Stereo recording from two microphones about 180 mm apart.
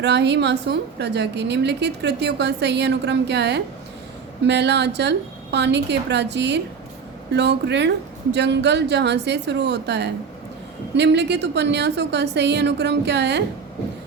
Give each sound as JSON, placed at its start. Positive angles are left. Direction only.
{"t": 0.0, "sound": "a woman's voice", "side_deg": -70}